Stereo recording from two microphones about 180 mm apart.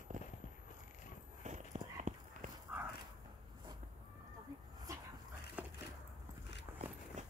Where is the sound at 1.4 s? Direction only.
40° right (ahead or behind).